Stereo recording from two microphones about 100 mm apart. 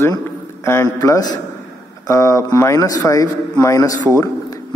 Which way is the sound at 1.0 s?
35° left (ahead or behind).